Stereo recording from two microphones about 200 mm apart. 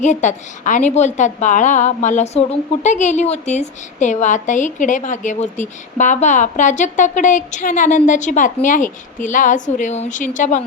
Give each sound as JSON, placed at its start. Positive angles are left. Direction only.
{"t": 0.0, "sound": "a woman's voice", "side_deg": 35}